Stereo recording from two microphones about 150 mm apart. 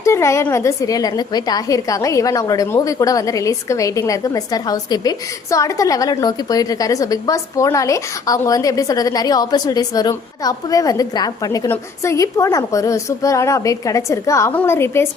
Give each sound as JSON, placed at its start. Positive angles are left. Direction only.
{"t": 0.0, "sound": "a woman's voice", "side_deg": 20}